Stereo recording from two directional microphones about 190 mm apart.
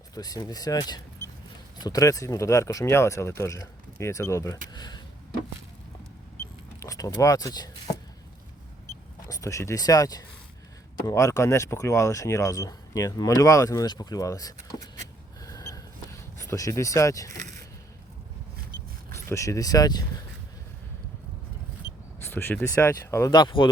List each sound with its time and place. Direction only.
0.1 s speech: 20° left (ahead or behind)
6.7 s speech: 15° left (ahead or behind)
9.2 s speech: 15° left (ahead or behind)
15.4 s a sound: 20° left (ahead or behind)
19.1 s speech: 15° left (ahead or behind)
22.2 s speech: 10° left (ahead or behind)